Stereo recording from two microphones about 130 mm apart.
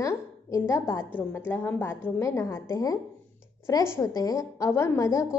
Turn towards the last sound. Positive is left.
turn(degrees=25)  # may be behind; listen again after turning